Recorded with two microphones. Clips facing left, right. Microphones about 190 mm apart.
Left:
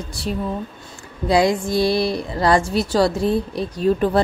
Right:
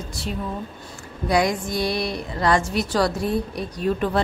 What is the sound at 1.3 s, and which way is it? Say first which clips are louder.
A woman's voice: left 4 dB; 30° left (ahead or behind).